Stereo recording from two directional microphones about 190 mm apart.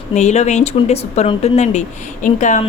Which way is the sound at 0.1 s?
40° left (ahead or behind).